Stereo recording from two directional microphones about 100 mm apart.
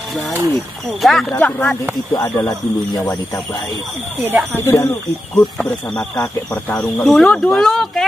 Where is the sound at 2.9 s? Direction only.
40° left (ahead or behind).